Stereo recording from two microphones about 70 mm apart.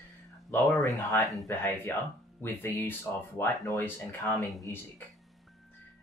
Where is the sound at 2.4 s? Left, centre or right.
Left.